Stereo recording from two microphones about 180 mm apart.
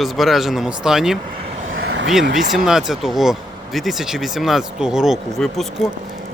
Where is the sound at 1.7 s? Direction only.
65° right (ahead or behind).